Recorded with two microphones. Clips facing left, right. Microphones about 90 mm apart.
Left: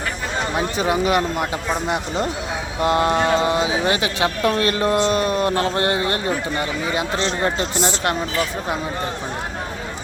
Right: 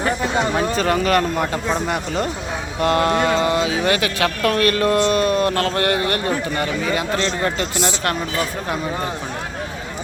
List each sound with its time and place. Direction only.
0.5 s speech: 15° left (ahead or behind)